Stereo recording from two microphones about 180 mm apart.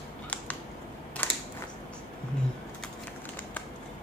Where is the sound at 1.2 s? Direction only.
10° left (ahead or behind).